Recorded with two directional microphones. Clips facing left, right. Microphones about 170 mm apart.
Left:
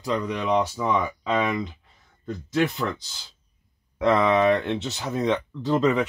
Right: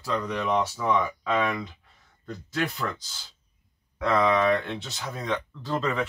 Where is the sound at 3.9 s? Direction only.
20° left (ahead or behind).